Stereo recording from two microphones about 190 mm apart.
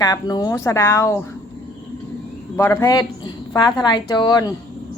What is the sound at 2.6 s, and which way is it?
A woman's voice, 15° left (ahead or behind).